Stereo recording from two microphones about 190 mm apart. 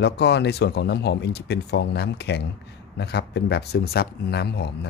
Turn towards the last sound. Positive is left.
turn(degrees=60)  # may be behind; listen again after turning